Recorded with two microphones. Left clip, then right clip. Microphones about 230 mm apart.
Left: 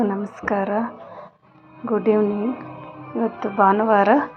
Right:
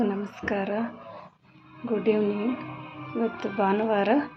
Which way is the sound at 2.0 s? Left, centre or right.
Centre.